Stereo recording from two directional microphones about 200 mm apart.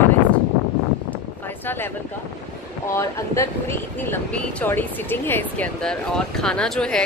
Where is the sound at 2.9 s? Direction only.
15° left (ahead or behind).